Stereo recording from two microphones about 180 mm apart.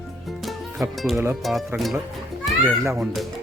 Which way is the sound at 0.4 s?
Centre (ahead or behind).